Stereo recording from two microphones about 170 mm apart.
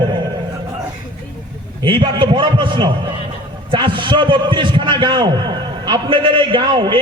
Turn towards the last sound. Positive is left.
turn(degrees=-25)  # may be behind; listen again after turning